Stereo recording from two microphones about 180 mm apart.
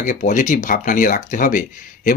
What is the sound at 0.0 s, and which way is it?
Speech, 45° left (ahead or behind).